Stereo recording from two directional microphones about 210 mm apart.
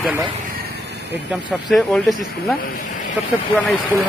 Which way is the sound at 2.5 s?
45° left (ahead or behind).